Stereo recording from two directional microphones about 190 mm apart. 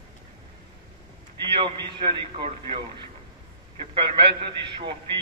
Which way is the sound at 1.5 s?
25° right (ahead or behind).